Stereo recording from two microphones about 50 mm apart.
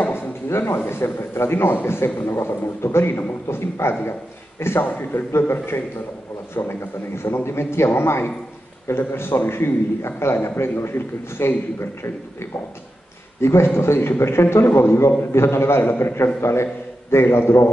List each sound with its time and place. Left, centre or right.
0.1 s a man's voice: left
16.3 s a man's voice: left